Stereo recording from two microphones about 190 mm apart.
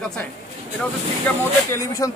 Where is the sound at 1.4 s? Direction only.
15° left (ahead or behind).